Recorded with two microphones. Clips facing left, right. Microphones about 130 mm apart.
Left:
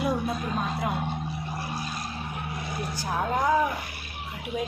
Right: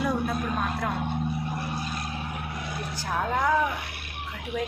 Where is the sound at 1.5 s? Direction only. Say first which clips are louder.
Right 1 dB; 60° right (ahead or behind).